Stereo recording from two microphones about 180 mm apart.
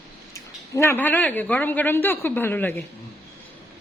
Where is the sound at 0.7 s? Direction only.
15° left (ahead or behind).